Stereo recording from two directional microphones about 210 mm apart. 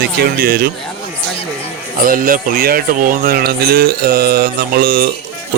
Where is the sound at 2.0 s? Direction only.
40° right (ahead or behind).